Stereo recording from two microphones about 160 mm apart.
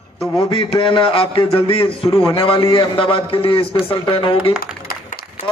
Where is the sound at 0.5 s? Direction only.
35° left (ahead or behind).